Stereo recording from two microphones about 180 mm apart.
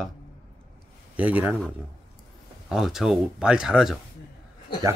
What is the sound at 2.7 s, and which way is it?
Speech, 5° right (ahead or behind).